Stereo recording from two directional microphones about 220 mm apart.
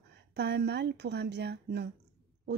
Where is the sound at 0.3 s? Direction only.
50° right (ahead or behind).